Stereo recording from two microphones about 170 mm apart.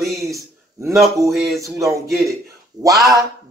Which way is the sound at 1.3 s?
Centre (ahead or behind).